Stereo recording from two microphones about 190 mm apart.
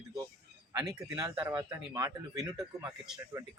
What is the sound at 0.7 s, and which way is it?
Speech, 20° right (ahead or behind).